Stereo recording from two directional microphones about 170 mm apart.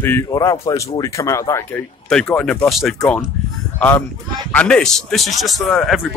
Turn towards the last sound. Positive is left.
turn(degrees=0)  # may be behind; listen again after turning